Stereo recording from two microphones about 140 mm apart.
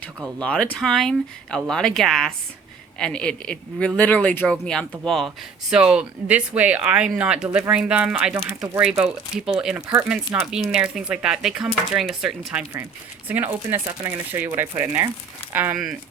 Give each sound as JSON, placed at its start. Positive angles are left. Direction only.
{"t": 0.4, "sound": "speech", "side_deg": 10}